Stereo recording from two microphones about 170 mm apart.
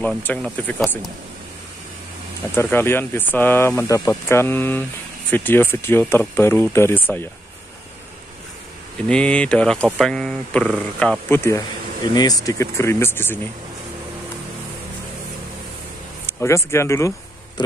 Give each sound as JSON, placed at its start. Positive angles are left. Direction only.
{"t": 0.0, "sound": "speech", "side_deg": 10}
{"t": 2.5, "sound": "speech", "side_deg": 15}
{"t": 9.0, "sound": "speech", "side_deg": 5}
{"t": 16.3, "sound": "speech", "side_deg": 15}